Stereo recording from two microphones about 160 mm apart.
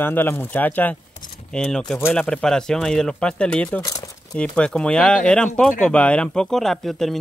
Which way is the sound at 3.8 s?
25° left (ahead or behind).